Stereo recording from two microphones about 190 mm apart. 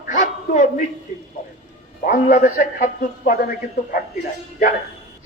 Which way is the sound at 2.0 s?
45° left (ahead or behind).